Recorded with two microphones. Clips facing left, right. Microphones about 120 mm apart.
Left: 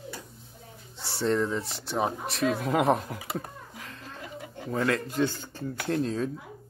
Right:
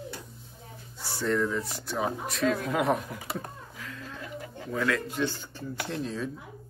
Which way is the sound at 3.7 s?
30° left (ahead or behind).